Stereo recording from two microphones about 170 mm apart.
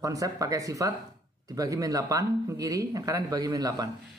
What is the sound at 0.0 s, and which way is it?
Speech, 20° right (ahead or behind).